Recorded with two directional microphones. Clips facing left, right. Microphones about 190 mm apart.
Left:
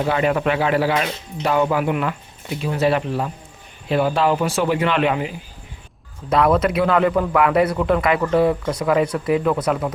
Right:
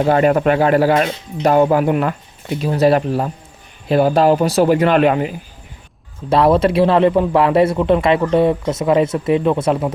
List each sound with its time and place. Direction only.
0.0 s speech: 45° right (ahead or behind)
6.3 s speech: 30° right (ahead or behind)